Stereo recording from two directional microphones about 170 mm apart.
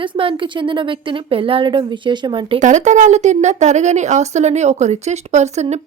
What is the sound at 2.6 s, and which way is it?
A woman's voice, 45° right (ahead or behind).